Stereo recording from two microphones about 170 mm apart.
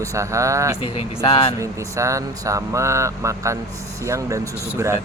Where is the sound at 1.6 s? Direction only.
20° right (ahead or behind).